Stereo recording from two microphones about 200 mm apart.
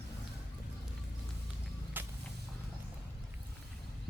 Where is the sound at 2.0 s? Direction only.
10° right (ahead or behind).